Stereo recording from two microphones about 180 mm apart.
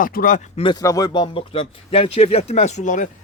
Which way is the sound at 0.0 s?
50° left (ahead or behind).